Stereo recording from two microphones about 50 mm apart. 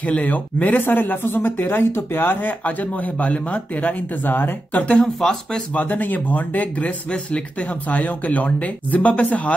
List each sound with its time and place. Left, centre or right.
0.0 s speech: left
2.6 s speech: left
5.0 s speech: centre
5.8 s speech: left